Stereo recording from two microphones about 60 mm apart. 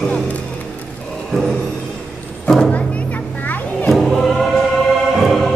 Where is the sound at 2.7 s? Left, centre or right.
Left.